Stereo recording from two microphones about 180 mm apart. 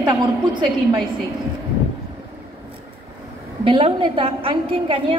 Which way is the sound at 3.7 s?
30° right (ahead or behind).